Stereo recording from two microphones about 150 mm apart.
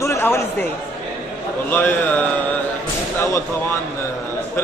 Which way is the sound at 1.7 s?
15° left (ahead or behind).